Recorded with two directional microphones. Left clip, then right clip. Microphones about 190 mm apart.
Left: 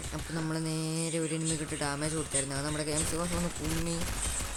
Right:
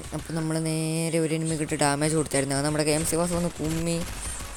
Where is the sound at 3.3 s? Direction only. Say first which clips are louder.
Right 6 dB; centre (ahead or behind).